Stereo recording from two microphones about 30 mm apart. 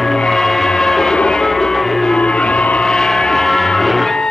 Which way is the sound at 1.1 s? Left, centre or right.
Left.